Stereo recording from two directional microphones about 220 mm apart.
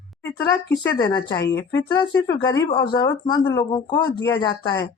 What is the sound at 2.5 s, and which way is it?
Speech, 20° left (ahead or behind).